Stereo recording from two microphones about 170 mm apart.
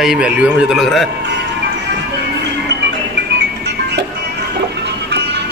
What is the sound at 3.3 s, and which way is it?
Music, 90° right.